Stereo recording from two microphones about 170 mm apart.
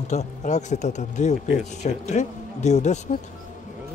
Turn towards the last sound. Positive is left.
turn(degrees=45)  # may be behind; listen again after turning